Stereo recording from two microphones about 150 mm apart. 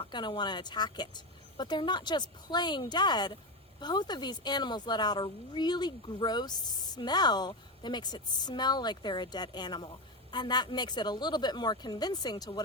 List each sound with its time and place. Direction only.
0.0 s speech: 30° left (ahead or behind)